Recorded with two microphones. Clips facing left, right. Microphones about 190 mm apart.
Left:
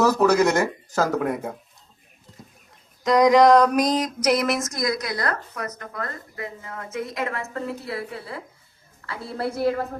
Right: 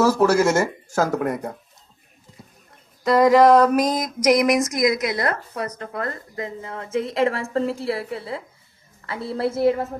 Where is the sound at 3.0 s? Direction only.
5° right (ahead or behind).